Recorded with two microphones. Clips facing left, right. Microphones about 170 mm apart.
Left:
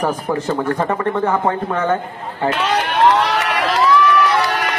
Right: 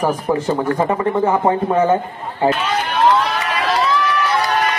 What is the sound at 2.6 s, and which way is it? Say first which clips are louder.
Run: left 1 dB; 75° left (ahead or behind).